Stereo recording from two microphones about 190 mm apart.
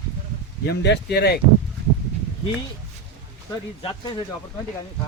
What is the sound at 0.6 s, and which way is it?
Speech, 60° left (ahead or behind).